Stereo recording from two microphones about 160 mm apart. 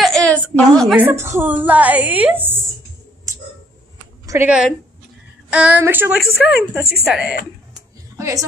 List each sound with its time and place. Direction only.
0.0 s a sound: centre (ahead or behind)
0.9 s a woman's voice: 15° right (ahead or behind)
4.3 s a woman's voice: 15° right (ahead or behind)
8.2 s a woman's voice: 20° right (ahead or behind)